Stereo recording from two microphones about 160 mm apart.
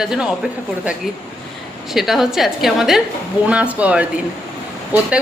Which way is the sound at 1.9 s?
Centre (ahead or behind).